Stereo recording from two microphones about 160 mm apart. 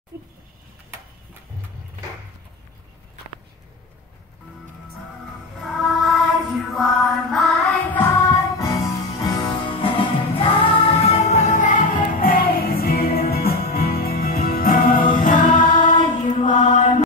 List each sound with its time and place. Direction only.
5.6 s music: 5° right (ahead or behind)
8.3 s music: 20° left (ahead or behind)
9.8 s music: 35° left (ahead or behind); by 15.5 s 55° left (ahead or behind)
15.8 s mantra: 50° left (ahead or behind)